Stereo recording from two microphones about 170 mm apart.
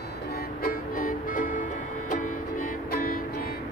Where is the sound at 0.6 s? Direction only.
55° left (ahead or behind).